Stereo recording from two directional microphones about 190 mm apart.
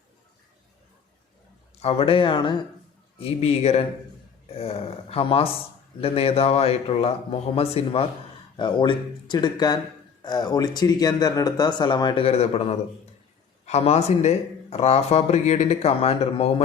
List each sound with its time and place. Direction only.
1.8 s speech: 30° left (ahead or behind)